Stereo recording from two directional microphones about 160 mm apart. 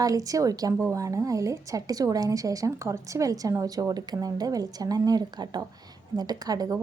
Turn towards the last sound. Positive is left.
turn(degrees=-25)  # may be behind; listen again after turning